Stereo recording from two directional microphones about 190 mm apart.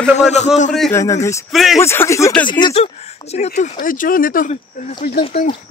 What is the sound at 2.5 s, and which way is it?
Speech, 25° left (ahead or behind).